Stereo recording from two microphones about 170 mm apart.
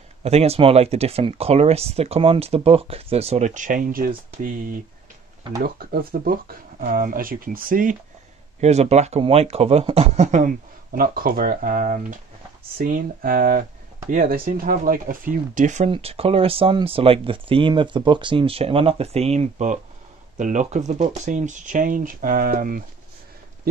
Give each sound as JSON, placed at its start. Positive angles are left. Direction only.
{"t": 0.2, "sound": "speech", "side_deg": -40}
{"t": 5.6, "sound": "speech", "side_deg": -65}
{"t": 8.5, "sound": "a man's voice", "side_deg": -40}
{"t": 15.9, "sound": "a man's voice", "side_deg": -35}